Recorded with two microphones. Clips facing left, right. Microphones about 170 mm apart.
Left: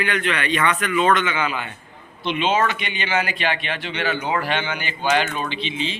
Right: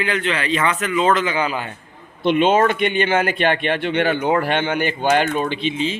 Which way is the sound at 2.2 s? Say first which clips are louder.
Right 6 dB; 50° right (ahead or behind).